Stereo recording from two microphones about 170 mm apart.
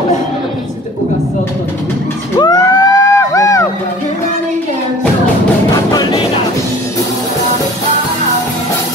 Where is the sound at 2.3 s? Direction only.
25° left (ahead or behind).